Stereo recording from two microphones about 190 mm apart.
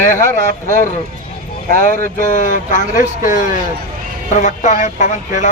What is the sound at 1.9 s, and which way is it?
A man's voice, 40° left (ahead or behind).